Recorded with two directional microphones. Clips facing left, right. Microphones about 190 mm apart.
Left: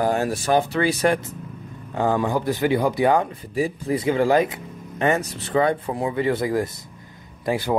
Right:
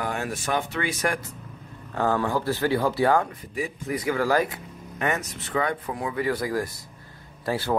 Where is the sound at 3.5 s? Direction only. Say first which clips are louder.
Left 6 dB; 30° left (ahead or behind).